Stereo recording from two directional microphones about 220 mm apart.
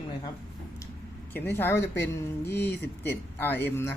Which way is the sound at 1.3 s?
10° left (ahead or behind).